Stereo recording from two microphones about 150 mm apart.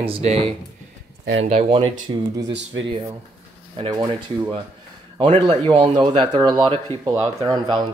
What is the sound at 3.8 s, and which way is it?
Speech, 30° right (ahead or behind).